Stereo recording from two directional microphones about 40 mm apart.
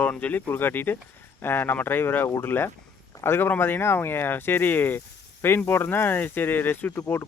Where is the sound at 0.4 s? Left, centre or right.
Left.